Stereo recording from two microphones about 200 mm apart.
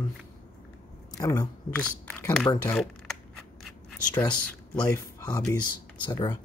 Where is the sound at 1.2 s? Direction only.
15° left (ahead or behind).